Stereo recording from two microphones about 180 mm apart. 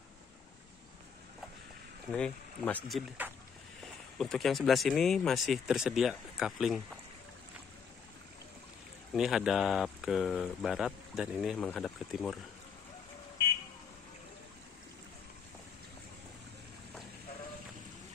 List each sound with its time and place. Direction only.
2.0 s speech: 5° left (ahead or behind)
4.2 s speech: centre (ahead or behind)
9.1 s speech: centre (ahead or behind)